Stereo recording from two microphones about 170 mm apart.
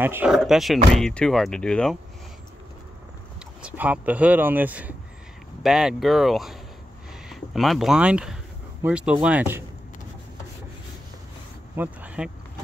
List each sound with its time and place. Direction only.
0.0 s speech: 10° right (ahead or behind)
3.6 s speech: 10° right (ahead or behind)
11.7 s a sound: 10° right (ahead or behind)